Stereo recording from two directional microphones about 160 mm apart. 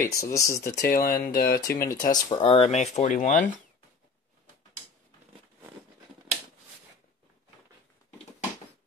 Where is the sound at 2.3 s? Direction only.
35° left (ahead or behind); by 3.4 s 50° left (ahead or behind).